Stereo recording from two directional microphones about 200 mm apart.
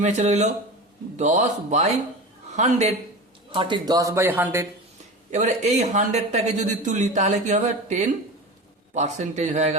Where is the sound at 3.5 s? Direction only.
25° right (ahead or behind).